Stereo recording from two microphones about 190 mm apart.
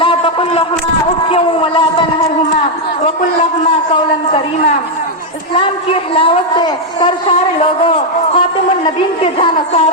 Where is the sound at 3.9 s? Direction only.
30° left (ahead or behind).